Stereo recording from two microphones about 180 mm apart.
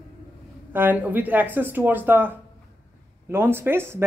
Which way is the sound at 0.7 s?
10° right (ahead or behind).